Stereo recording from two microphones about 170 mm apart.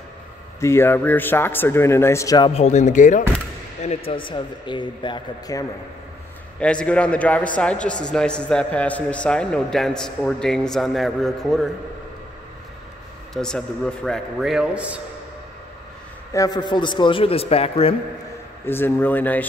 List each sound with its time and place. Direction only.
0.6 s speech: 15° left (ahead or behind)
2.5 s a man's voice: 40° left (ahead or behind); by 5.7 s 25° left (ahead or behind)
6.6 s a man's voice: 5° left (ahead or behind)
13.3 s a man's voice: 5° left (ahead or behind)
16.3 s a man's voice: 25° left (ahead or behind)
18.7 s speech: 15° left (ahead or behind)